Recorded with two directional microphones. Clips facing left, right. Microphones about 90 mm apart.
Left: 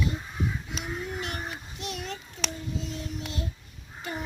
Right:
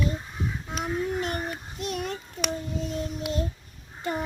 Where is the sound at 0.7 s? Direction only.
45° right (ahead or behind).